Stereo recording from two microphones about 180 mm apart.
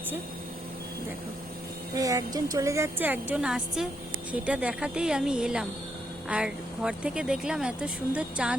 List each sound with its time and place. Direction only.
2.0 s speech: 20° right (ahead or behind)